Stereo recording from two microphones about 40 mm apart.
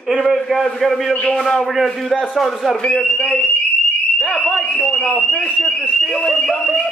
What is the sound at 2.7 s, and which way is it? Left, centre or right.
A man's voice, centre.